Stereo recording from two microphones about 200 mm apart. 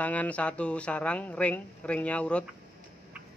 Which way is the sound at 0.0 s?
5° left (ahead or behind).